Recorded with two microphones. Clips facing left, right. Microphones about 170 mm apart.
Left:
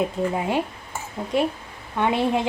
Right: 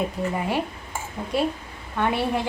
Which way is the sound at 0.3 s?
15° left (ahead or behind).